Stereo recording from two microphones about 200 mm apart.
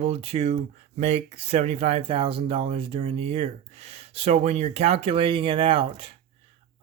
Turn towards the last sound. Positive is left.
turn(degrees=-25)  # may be behind; listen again after turning